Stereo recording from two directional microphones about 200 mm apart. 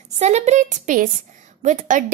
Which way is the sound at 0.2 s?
35° right (ahead or behind).